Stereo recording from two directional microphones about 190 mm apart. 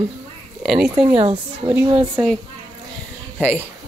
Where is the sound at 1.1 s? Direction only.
30° right (ahead or behind).